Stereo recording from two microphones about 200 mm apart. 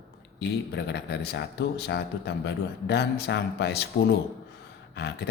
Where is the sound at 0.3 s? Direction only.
55° left (ahead or behind).